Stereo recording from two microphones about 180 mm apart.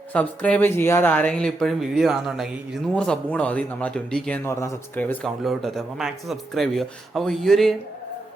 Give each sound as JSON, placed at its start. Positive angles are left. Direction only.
{"t": 0.1, "sound": "speech", "side_deg": 5}